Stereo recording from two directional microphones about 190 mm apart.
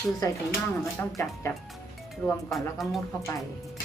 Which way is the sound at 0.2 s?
15° left (ahead or behind).